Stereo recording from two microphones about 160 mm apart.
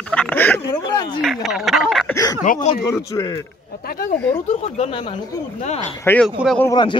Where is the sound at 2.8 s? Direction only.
25° left (ahead or behind).